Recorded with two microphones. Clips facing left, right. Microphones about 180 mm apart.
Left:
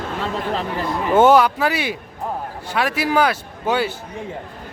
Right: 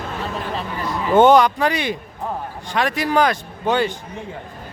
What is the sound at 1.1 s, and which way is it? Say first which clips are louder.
Speech: right 1 dB; 5° left (ahead or behind).